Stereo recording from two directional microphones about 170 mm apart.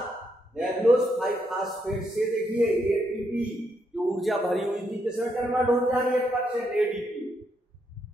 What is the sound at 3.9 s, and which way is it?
Speech, centre (ahead or behind).